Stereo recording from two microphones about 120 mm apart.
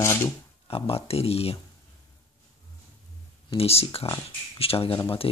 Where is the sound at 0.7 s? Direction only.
55° left (ahead or behind).